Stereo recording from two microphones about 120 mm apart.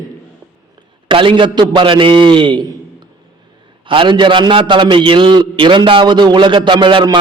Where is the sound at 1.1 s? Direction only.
45° right (ahead or behind).